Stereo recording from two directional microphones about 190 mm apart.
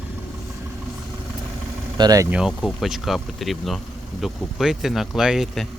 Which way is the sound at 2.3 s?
Centre (ahead or behind).